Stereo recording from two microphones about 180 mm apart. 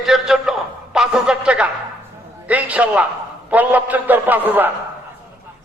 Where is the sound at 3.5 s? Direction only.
10° right (ahead or behind).